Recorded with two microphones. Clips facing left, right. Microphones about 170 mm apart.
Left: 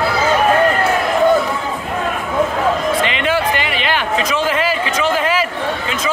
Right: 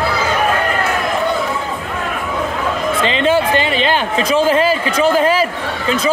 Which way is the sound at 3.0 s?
30° right (ahead or behind).